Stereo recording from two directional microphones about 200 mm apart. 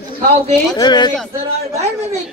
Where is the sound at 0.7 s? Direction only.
20° left (ahead or behind).